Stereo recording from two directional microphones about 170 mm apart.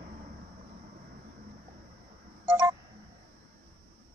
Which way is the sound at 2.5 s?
15° right (ahead or behind).